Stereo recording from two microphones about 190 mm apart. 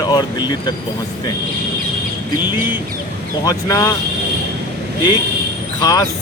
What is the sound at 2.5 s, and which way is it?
Speech, 10° right (ahead or behind).